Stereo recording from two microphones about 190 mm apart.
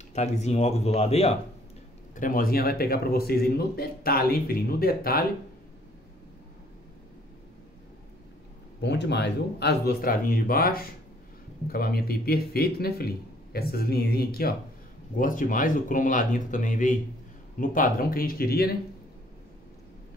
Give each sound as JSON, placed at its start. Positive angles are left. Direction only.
{"t": 0.1, "sound": "speech", "side_deg": 35}
{"t": 2.1, "sound": "a man's voice", "side_deg": 45}
{"t": 8.8, "sound": "a man's voice", "side_deg": 65}